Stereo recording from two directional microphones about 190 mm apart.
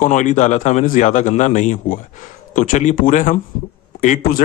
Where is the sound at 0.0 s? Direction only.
40° left (ahead or behind).